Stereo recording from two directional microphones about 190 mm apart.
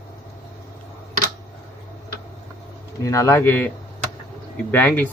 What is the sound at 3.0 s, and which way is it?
Speech, 15° left (ahead or behind).